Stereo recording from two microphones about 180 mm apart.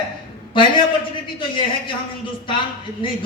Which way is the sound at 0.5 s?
25° left (ahead or behind).